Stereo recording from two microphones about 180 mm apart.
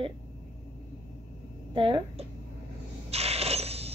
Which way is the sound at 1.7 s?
30° right (ahead or behind).